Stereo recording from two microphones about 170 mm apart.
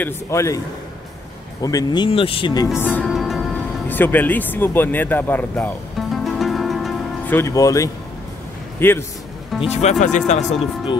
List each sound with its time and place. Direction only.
0.0 s speech: 15° left (ahead or behind)
1.6 s speech: 20° left (ahead or behind)
2.8 s music: 10° left (ahead or behind)
3.1 s music: centre (ahead or behind)
3.9 s speech: 10° left (ahead or behind)
5.9 s music: centre (ahead or behind)
7.2 s a man's voice: 15° left (ahead or behind)
9.6 s speech: 40° left (ahead or behind)